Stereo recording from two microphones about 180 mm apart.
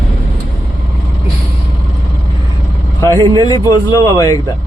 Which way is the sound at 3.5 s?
20° left (ahead or behind).